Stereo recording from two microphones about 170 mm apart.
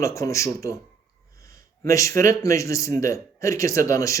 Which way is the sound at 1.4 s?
20° left (ahead or behind).